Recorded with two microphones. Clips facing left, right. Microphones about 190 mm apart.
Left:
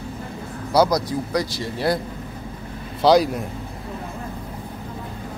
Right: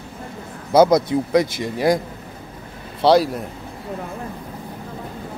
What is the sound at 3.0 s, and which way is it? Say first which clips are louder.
Speech: right 1 dB; centre (ahead or behind).